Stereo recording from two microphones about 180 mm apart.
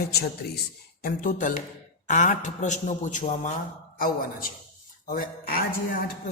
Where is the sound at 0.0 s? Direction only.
60° left (ahead or behind).